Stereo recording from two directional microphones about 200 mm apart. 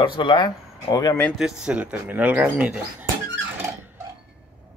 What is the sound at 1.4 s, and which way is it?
Speech, 5° right (ahead or behind).